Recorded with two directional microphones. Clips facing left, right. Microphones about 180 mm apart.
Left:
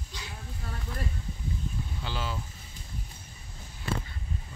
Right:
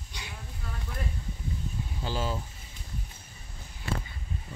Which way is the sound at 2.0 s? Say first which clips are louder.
Right 5 dB; 40° right (ahead or behind).